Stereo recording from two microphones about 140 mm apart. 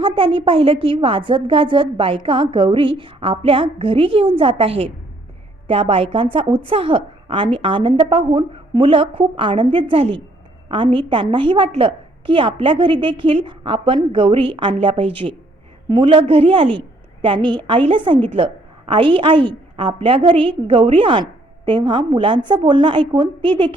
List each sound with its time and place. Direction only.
0.0 s a woman's voice: 40° right (ahead or behind)